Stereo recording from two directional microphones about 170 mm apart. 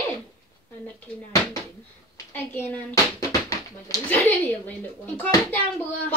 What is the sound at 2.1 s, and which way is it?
A woman's voice, 15° left (ahead or behind).